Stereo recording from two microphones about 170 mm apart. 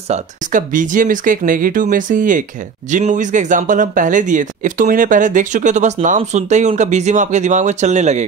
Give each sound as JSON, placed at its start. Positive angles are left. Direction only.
{"t": 0.1, "sound": "speech", "side_deg": -50}